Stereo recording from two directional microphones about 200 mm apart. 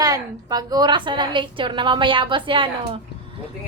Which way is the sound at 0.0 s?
20° right (ahead or behind).